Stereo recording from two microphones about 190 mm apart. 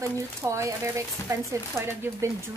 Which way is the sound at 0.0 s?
15° right (ahead or behind).